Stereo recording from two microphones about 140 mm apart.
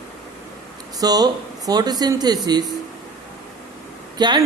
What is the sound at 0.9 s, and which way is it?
A man's voice, 30° right (ahead or behind).